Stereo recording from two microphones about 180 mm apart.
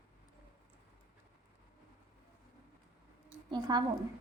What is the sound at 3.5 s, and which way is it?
Speech, 25° right (ahead or behind).